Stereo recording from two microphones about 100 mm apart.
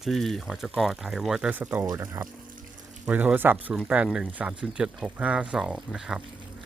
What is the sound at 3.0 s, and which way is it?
Speech, 15° right (ahead or behind).